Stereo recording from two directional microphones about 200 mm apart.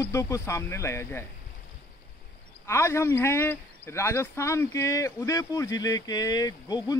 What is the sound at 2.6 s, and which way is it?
A man's voice, 15° left (ahead or behind).